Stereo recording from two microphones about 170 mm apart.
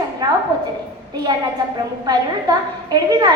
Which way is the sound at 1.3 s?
25° right (ahead or behind).